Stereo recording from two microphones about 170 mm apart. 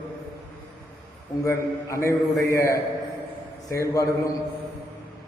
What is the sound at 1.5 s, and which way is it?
A man's voice, 15° left (ahead or behind).